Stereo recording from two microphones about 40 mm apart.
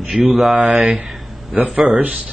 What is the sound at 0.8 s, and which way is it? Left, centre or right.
Speech, right.